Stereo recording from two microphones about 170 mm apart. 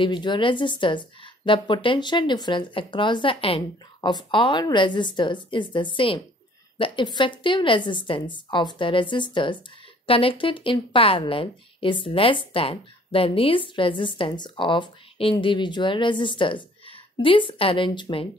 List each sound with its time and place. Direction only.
0.0 s a woman's voice: 25° left (ahead or behind)